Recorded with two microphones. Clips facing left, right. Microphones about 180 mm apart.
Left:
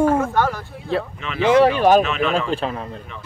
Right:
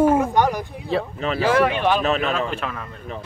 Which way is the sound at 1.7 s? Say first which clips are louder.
Left 6 dB; 40° left (ahead or behind).